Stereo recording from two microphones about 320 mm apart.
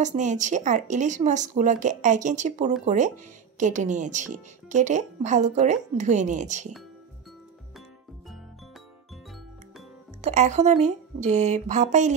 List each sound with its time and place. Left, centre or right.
0.0 s a woman's voice: right
10.2 s a woman's voice: right